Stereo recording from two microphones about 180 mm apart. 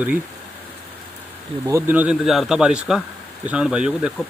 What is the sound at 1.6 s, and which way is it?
Speech, 15° right (ahead or behind).